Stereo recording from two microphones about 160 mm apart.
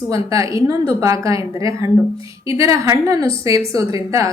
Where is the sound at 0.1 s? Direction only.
20° right (ahead or behind).